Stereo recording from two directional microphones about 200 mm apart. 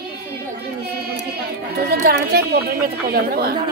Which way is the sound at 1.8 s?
50° right (ahead or behind).